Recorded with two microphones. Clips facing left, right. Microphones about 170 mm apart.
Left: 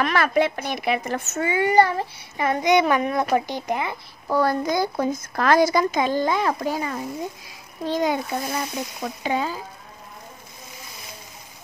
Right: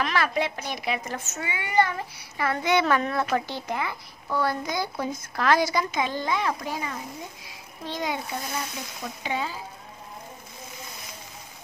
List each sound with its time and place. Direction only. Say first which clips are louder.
0.0 s a woman's voice: left 5 dB; 55° left (ahead or behind); by 2.0 s 35° left (ahead or behind)
2.3 s a child's voice: left 5 dB; 20° left (ahead or behind)
4.3 s a woman's voice: left 6 dB; 45° left (ahead or behind)
9.2 s a woman's voice: left 5 dB; 45° left (ahead or behind)